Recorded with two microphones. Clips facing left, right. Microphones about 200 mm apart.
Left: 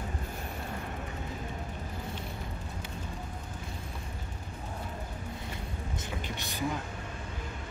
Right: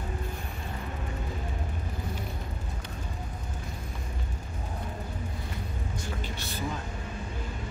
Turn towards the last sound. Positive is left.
turn(degrees=15)  # may be behind; listen again after turning